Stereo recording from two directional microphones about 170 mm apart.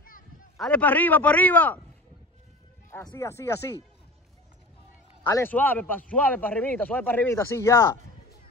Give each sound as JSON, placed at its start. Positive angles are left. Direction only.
{"t": 0.6, "sound": "a man's voice", "side_deg": 5}
{"t": 2.9, "sound": "a man's voice", "side_deg": 20}
{"t": 5.2, "sound": "a man's voice", "side_deg": 15}